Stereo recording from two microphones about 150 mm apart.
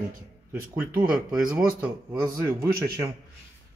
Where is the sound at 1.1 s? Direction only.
5° right (ahead or behind).